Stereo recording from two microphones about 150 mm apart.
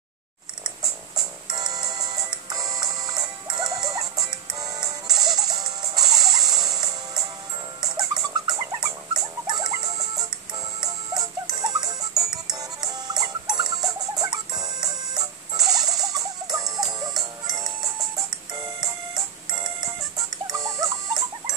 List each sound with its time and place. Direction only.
1.5 s music: 25° right (ahead or behind)
7.8 s dog: 25° right (ahead or behind)
10.8 s music: 25° right (ahead or behind)
20.5 s rodents: 20° right (ahead or behind)